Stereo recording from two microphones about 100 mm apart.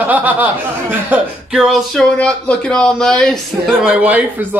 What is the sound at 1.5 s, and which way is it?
Speech, centre (ahead or behind).